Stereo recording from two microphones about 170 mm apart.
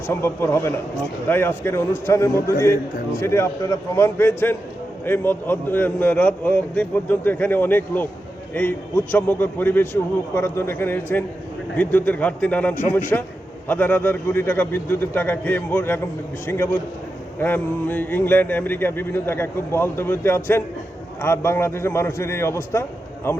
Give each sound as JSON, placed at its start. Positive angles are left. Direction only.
{"t": 0.1, "sound": "speech", "side_deg": 15}
{"t": 9.1, "sound": "speech", "side_deg": 10}